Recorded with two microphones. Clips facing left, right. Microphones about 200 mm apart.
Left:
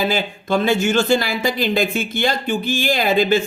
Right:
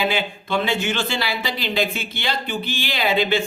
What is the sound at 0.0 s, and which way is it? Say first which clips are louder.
Speech: left 2 dB; 40° left (ahead or behind).